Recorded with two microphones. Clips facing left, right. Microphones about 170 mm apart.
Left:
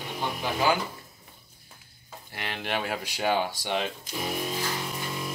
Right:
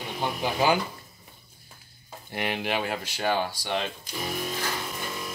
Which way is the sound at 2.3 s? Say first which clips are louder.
Right 7 dB; 15° right (ahead or behind).